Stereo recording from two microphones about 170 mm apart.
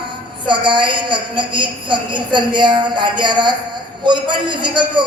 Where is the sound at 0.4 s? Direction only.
30° right (ahead or behind).